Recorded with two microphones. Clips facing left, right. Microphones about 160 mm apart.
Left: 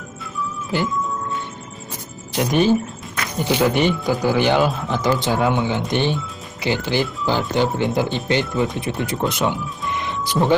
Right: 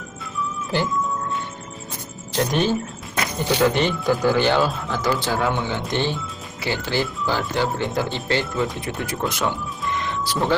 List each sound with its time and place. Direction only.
2.3 s speech: 10° left (ahead or behind)
9.9 s music: 15° left (ahead or behind)